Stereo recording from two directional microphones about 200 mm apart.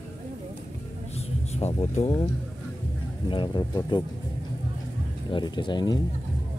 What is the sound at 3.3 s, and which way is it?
Speech, 20° left (ahead or behind).